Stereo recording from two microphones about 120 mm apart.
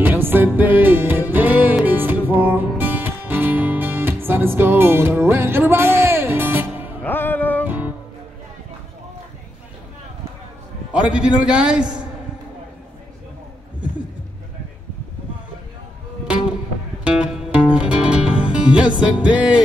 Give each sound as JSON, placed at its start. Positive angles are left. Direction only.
{"t": 0.0, "sound": "music", "side_deg": -15}
{"t": 7.0, "sound": "music", "side_deg": 15}
{"t": 7.6, "sound": "music", "side_deg": -15}
{"t": 10.9, "sound": "a man's voice", "side_deg": -10}
{"t": 17.0, "sound": "music", "side_deg": -5}